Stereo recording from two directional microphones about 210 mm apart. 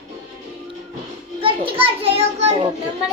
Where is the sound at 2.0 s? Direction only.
30° right (ahead or behind).